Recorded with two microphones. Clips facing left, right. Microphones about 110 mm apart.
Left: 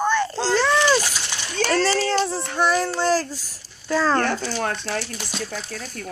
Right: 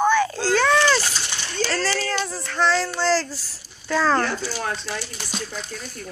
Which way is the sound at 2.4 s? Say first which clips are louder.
Left 1 dB; 15° left (ahead or behind).